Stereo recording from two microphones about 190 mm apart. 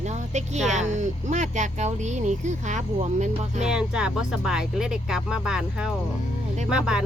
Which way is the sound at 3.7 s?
5° right (ahead or behind).